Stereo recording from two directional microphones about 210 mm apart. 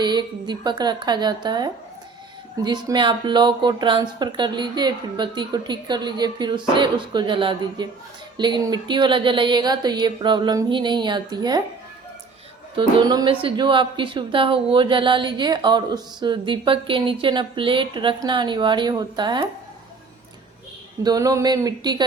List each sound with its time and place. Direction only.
0.0 s speech: 20° right (ahead or behind)
12.7 s speech: 20° right (ahead or behind)
21.0 s speech: 15° right (ahead or behind)